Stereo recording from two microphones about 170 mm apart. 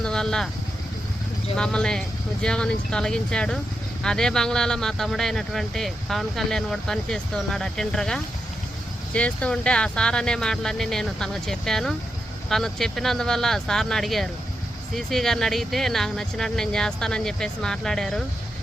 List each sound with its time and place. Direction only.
0.0 s vehicle: 5° left (ahead or behind)
1.5 s speech: 5° left (ahead or behind)